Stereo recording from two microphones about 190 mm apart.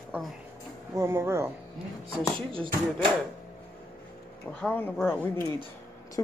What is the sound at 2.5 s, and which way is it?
Speech, 30° right (ahead or behind).